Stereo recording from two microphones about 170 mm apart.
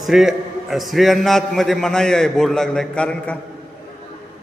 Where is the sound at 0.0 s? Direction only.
Centre (ahead or behind).